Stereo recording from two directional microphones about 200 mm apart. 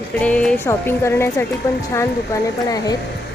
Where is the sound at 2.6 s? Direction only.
20° left (ahead or behind).